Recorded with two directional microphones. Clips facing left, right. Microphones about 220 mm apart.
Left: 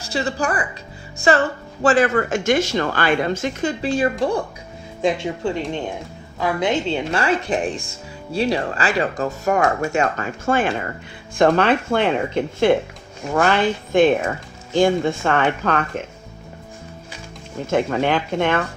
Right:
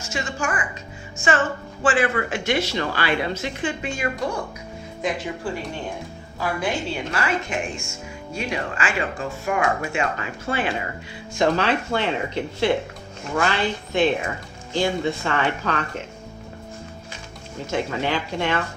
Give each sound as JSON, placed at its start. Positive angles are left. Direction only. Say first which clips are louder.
{"t": 0.0, "sound": "a woman's voice", "louder": "left 5 dB", "side_deg": 35}
{"t": 6.4, "sound": "a woman's voice", "louder": "left 5 dB", "side_deg": 20}
{"t": 17.7, "sound": "a woman's voice", "louder": "left 5 dB", "side_deg": 55}